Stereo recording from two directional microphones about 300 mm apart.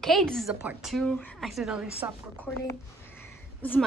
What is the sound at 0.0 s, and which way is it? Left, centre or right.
A woman's voice, centre.